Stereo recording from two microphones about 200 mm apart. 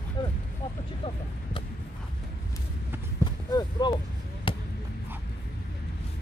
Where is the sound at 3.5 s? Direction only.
20° left (ahead or behind).